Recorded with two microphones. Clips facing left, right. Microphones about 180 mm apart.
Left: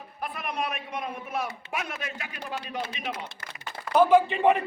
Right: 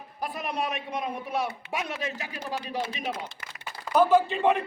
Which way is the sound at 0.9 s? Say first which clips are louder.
Right 2 dB; 30° right (ahead or behind).